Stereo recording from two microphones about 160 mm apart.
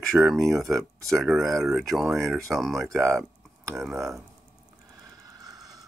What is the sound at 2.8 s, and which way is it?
Speech, 15° right (ahead or behind).